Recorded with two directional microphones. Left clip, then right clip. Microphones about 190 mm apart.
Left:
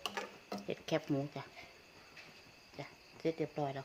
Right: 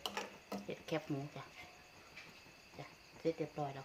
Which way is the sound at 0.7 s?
45° left (ahead or behind).